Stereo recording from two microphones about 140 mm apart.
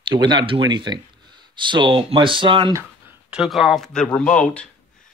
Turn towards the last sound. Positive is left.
turn(degrees=10)  # may be behind; listen again after turning